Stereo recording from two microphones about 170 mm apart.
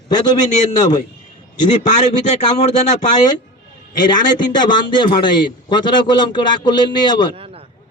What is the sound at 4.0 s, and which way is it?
A man's voice, 25° left (ahead or behind).